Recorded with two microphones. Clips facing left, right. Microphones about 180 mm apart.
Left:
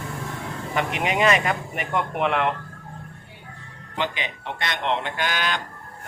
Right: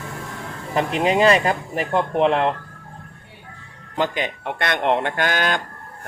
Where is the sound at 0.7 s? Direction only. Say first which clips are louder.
Right 6 dB; 30° right (ahead or behind).